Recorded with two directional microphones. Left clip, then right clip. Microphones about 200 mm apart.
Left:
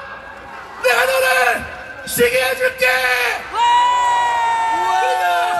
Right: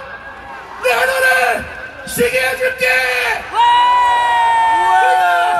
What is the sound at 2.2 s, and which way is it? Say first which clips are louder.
Speech: right 1 dB; 15° left (ahead or behind).